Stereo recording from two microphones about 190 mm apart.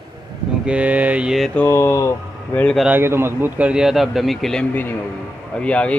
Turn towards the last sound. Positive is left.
turn(degrees=5)  # may be behind; listen again after turning